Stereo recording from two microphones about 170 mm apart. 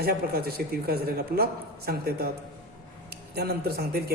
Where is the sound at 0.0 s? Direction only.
65° right (ahead or behind).